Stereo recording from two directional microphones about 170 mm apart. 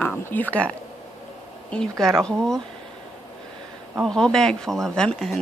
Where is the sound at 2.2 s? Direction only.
5° left (ahead or behind).